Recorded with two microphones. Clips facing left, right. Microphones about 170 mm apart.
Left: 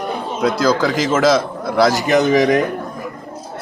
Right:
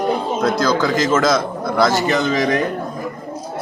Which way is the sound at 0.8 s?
10° left (ahead or behind).